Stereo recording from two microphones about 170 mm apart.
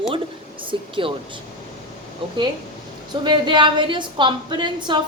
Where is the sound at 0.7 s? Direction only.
30° right (ahead or behind).